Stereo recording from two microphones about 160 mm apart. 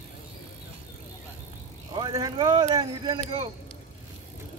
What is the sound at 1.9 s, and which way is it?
Speech, 25° right (ahead or behind).